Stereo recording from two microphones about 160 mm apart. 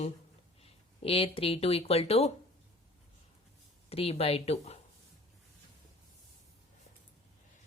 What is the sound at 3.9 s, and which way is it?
Speech, 40° left (ahead or behind).